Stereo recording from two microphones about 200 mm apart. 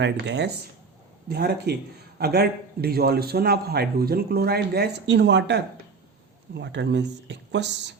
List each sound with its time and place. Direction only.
0.0 s a man's voice: 60° right (ahead or behind)